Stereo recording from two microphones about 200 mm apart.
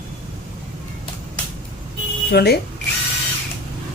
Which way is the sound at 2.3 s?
55° left (ahead or behind).